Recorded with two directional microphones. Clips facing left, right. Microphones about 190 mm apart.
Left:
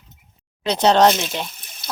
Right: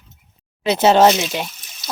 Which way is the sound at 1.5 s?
55° left (ahead or behind).